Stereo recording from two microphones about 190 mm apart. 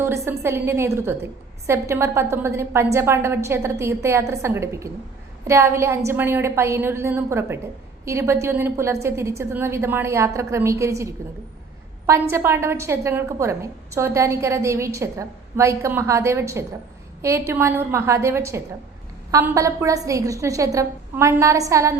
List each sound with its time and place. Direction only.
0.3 s a woman's voice: 10° right (ahead or behind)
12.3 s a woman's voice: 15° right (ahead or behind)